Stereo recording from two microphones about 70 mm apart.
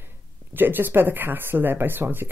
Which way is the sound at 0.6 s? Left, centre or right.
Right.